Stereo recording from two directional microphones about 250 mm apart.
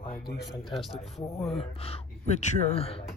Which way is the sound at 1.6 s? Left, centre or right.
Left.